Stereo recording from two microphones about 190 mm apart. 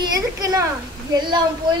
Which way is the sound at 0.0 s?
20° right (ahead or behind).